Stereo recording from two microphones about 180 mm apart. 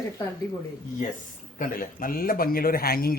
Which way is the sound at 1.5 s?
50° left (ahead or behind).